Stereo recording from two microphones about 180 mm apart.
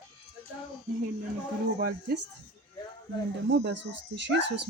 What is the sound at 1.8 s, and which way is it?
Speech, 65° right (ahead or behind).